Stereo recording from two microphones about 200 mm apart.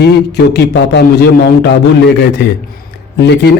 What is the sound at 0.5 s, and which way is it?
Speech, 55° left (ahead or behind).